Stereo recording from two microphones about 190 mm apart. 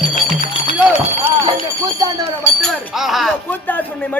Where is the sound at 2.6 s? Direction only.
Centre (ahead or behind).